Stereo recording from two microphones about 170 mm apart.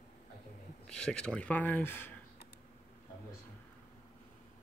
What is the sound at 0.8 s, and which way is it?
Speech, 5° left (ahead or behind).